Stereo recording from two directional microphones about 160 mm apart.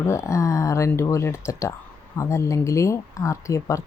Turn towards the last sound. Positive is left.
turn(degrees=20)  # may be behind; listen again after turning